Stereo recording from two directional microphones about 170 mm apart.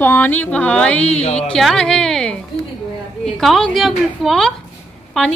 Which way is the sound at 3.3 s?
Centre (ahead or behind).